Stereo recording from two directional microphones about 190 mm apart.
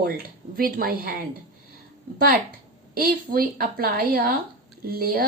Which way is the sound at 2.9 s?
50° right (ahead or behind).